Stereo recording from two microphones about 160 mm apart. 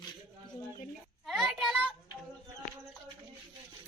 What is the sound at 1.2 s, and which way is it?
Child singing, centre (ahead or behind).